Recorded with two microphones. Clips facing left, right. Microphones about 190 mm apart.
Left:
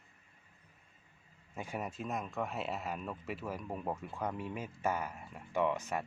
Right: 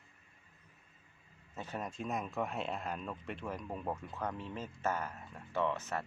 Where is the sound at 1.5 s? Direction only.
10° left (ahead or behind).